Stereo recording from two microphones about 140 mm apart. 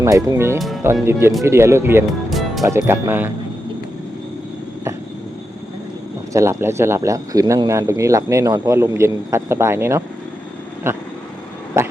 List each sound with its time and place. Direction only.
0.0 s speech: 20° right (ahead or behind)
2.3 s music: centre (ahead or behind)
2.6 s speech: 20° right (ahead or behind)
6.3 s speech: 20° right (ahead or behind)